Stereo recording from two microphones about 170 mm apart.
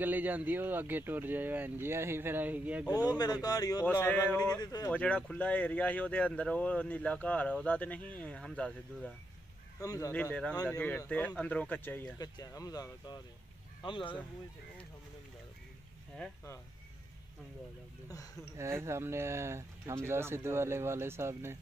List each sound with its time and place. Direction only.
0.0 s speech: 10° right (ahead or behind)
3.1 s speech: 25° left (ahead or behind)
3.8 s speech: 10° left (ahead or behind)
4.9 s speech: 5° left (ahead or behind)
9.8 s speech: 20° left (ahead or behind)
10.1 s speech: 10° left (ahead or behind)
10.5 s speech: 20° left (ahead or behind)
10.8 s speech: 10° left (ahead or behind)
12.2 s speech: 20° left (ahead or behind)
18.0 s speech: 20° left (ahead or behind)
18.6 s speech: 15° right (ahead or behind)